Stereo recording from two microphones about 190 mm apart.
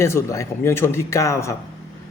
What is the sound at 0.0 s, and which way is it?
Speech, 15° left (ahead or behind).